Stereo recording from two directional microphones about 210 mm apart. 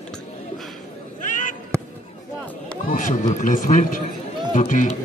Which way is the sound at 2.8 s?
40° left (ahead or behind).